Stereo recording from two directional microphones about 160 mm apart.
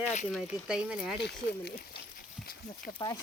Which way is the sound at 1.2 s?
90° left.